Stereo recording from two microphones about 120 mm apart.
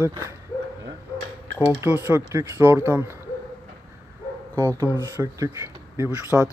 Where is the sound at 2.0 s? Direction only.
20° right (ahead or behind).